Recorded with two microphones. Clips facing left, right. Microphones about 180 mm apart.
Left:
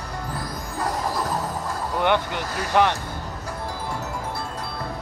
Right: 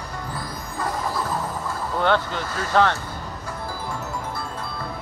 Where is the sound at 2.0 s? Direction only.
15° left (ahead or behind).